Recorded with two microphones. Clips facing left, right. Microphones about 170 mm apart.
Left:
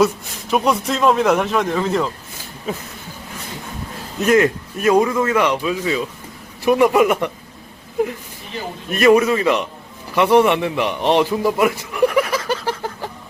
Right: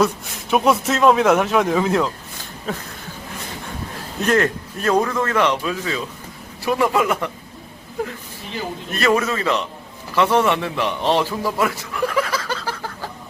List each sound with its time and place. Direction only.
0.0 s a man's voice: centre (ahead or behind)
4.3 s speech: 10° left (ahead or behind)
8.9 s a man's voice: 15° left (ahead or behind)